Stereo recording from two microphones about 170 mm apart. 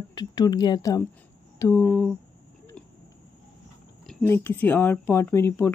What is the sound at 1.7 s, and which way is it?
Speech, 5° left (ahead or behind).